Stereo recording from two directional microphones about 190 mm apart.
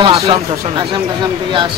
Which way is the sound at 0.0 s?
30° right (ahead or behind).